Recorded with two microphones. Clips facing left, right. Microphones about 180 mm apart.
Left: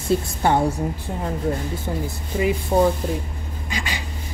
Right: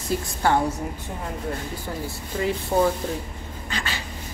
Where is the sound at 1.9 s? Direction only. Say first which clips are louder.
Left 3 dB; 20° left (ahead or behind).